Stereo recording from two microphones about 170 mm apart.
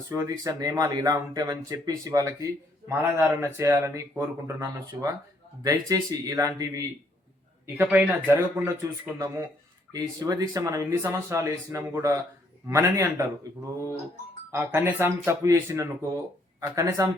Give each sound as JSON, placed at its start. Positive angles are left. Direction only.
{"t": 0.1, "sound": "speech", "side_deg": -20}
{"t": 14.5, "sound": "speech", "side_deg": -15}